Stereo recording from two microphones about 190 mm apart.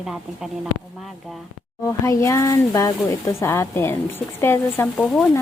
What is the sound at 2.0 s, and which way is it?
Speech, 15° left (ahead or behind).